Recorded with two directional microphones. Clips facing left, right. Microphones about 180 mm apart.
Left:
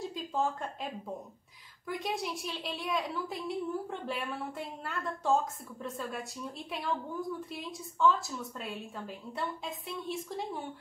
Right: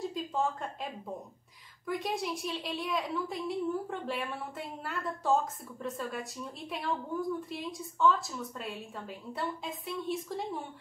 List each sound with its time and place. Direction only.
0.0 s a woman's voice: centre (ahead or behind)
1.9 s a woman's voice: centre (ahead or behind)